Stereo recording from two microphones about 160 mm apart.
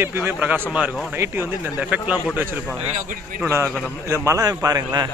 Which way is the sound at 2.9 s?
50° right (ahead or behind).